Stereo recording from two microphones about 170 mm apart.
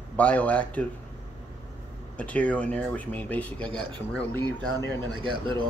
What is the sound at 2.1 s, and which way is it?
Speech, 10° left (ahead or behind).